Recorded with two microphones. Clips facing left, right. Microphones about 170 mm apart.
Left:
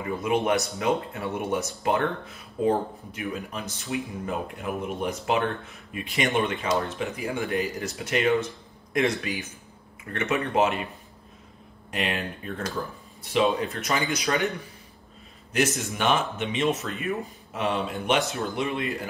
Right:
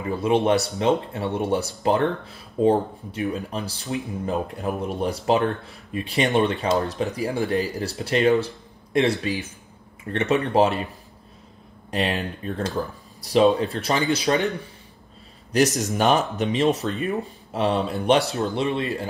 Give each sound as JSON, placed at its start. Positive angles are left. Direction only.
{"t": 0.1, "sound": "speech", "side_deg": -30}
{"t": 11.9, "sound": "speech", "side_deg": -35}
{"t": 15.5, "sound": "speech", "side_deg": -40}